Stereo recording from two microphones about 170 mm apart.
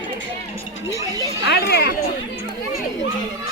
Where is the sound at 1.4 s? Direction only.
75° left (ahead or behind).